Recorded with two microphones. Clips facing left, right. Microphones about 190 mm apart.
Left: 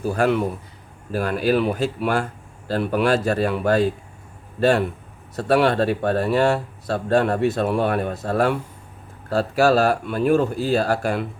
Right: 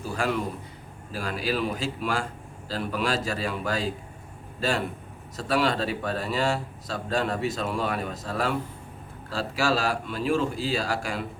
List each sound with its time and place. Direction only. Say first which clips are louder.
0.0 s speech: left 8 dB; 60° left (ahead or behind)
5.4 s speech: left 7 dB; 60° left (ahead or behind)